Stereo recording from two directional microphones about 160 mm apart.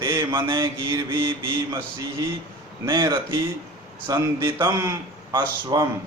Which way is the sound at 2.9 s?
25° right (ahead or behind).